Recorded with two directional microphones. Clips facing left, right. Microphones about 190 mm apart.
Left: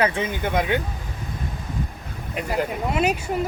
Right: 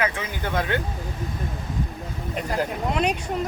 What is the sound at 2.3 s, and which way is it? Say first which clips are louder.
Speech: left 2 dB; 5° left (ahead or behind).